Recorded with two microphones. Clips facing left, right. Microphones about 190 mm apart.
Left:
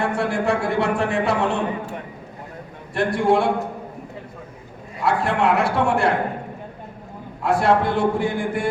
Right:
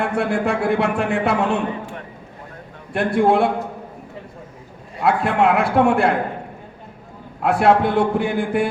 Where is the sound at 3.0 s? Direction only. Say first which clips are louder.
Right 2 dB; 60° right (ahead or behind).